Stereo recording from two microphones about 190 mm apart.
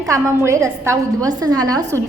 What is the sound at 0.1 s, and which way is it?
A woman's voice, 15° right (ahead or behind).